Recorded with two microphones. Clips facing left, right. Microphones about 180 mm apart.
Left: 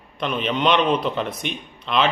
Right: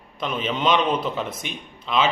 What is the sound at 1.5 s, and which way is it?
Speech, 65° left (ahead or behind).